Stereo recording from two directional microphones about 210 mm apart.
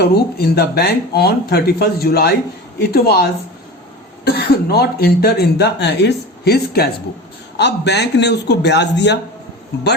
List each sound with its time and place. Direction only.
0.0 s speech: 50° left (ahead or behind)
4.3 s speech: 50° left (ahead or behind)